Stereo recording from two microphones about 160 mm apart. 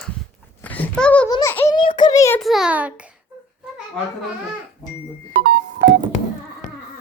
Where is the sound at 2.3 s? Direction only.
Centre (ahead or behind).